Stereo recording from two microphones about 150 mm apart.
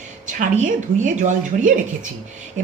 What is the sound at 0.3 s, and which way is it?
A woman's voice, 55° right (ahead or behind).